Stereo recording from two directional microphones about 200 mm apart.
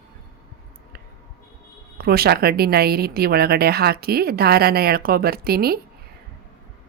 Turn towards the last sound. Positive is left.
turn(degrees=-50)  # may be behind; listen again after turning